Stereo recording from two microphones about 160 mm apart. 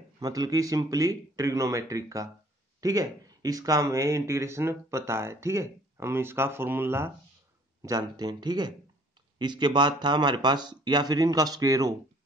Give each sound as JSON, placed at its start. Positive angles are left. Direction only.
{"t": 0.2, "sound": "speech", "side_deg": -25}